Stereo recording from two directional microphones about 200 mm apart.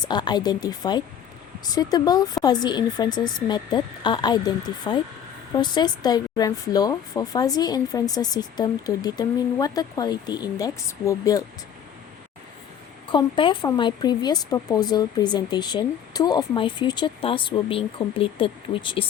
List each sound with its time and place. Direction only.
0.0 s speech: 20° left (ahead or behind)
13.1 s speech: 25° left (ahead or behind)